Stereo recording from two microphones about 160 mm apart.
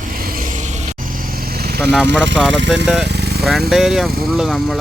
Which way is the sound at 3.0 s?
90° right.